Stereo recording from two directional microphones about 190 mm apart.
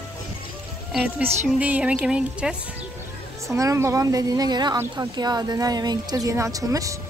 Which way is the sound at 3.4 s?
15° right (ahead or behind).